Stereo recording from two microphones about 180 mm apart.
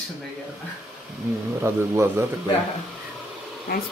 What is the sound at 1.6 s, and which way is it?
Speech, 15° right (ahead or behind).